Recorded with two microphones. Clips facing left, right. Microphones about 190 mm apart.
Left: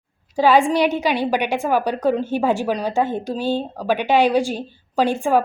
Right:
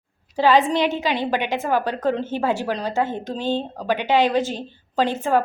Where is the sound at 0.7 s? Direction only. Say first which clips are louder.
Left 3 dB; 20° right (ahead or behind).